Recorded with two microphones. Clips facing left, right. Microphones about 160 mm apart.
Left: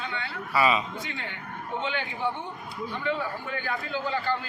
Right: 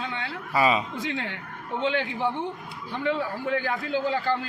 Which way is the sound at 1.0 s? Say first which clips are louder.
Right 6 dB; 90° right.